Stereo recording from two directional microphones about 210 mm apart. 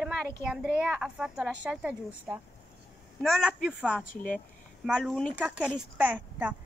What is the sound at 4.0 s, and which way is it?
Speech, 40° left (ahead or behind).